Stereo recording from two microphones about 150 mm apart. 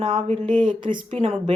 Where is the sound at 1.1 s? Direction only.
45° right (ahead or behind).